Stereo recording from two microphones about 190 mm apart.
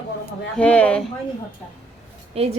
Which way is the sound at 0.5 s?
5° left (ahead or behind).